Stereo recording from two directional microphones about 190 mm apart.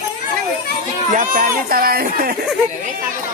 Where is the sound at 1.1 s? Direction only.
45° right (ahead or behind).